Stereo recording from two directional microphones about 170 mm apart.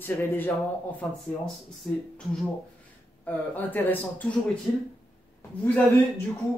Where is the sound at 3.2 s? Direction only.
10° left (ahead or behind).